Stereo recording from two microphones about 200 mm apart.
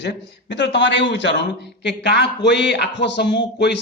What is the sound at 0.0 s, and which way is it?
Speech, 60° left (ahead or behind).